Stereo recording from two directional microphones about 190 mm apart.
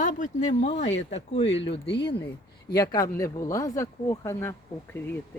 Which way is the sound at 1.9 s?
60° left (ahead or behind).